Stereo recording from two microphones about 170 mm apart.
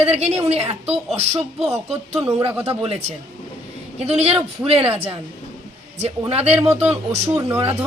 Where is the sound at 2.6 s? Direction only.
35° right (ahead or behind).